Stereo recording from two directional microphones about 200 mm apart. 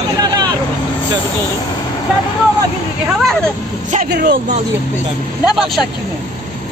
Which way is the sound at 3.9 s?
45° right (ahead or behind).